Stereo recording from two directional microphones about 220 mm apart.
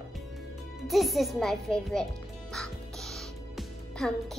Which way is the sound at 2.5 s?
Centre (ahead or behind).